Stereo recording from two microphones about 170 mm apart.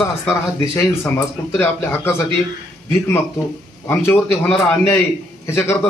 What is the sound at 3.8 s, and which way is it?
Speech, 15° left (ahead or behind).